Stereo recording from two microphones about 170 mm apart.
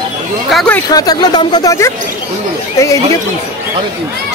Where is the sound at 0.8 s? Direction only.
25° left (ahead or behind).